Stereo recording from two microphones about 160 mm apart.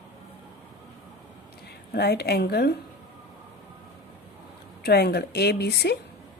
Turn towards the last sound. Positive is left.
turn(degrees=90)